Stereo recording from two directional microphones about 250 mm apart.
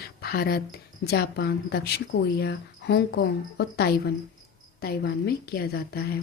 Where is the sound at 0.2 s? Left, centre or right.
Left.